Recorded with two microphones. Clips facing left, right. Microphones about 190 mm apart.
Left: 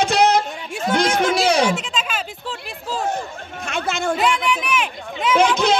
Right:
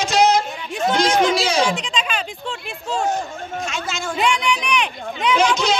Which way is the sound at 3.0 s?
60° left (ahead or behind).